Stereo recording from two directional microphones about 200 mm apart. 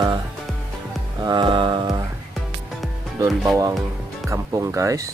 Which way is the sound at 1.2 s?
25° right (ahead or behind).